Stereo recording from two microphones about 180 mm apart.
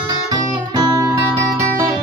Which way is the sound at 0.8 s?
20° right (ahead or behind).